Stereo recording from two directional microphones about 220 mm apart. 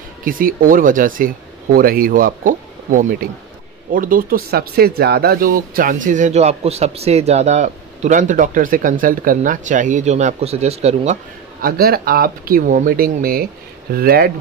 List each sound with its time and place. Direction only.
0.2 s speech: 40° right (ahead or behind)
11.6 s speech: 45° right (ahead or behind)